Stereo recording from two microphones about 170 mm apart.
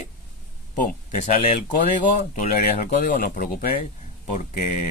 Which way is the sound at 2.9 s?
55° left (ahead or behind).